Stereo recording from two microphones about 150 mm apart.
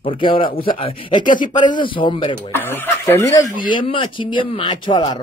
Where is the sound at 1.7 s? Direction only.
30° left (ahead or behind).